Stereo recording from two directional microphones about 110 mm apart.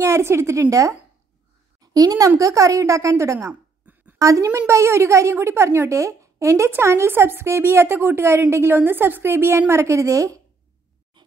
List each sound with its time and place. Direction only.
0.0 s a woman's voice: 25° right (ahead or behind)
3.8 s a sound: 15° right (ahead or behind)
4.2 s a woman's voice: 30° right (ahead or behind)
11.2 s writing: 45° right (ahead or behind)